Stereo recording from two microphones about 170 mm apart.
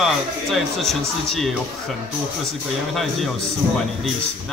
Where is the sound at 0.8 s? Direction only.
Centre (ahead or behind).